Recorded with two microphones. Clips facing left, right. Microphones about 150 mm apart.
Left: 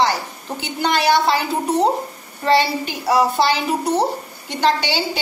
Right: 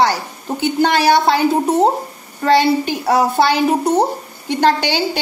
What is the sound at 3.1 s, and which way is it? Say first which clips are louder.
A woman's voice: right 2 dB; 50° right (ahead or behind).